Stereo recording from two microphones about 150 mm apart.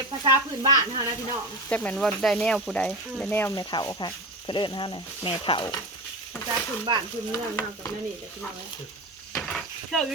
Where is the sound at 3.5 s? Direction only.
25° left (ahead or behind).